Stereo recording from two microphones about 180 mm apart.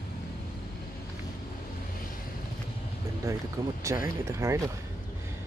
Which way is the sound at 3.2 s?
20° right (ahead or behind).